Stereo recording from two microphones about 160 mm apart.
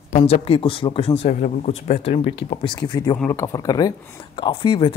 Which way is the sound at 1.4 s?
55° left (ahead or behind).